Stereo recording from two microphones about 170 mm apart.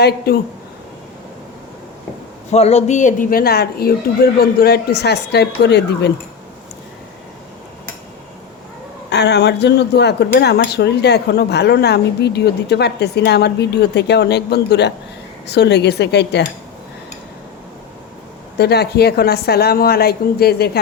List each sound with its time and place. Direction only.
2.5 s speech: 40° left (ahead or behind); by 6.1 s 80° left
9.0 s speech: 85° left
18.5 s speech: 75° left (ahead or behind)